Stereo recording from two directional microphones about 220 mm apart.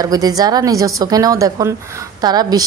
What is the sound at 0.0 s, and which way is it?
A woman's voice, 15° right (ahead or behind).